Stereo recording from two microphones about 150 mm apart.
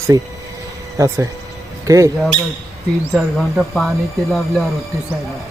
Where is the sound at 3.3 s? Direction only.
Centre (ahead or behind).